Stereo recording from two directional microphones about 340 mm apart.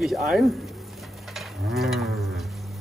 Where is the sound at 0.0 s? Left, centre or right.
Centre.